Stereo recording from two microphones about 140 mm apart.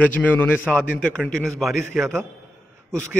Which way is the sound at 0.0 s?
10° left (ahead or behind).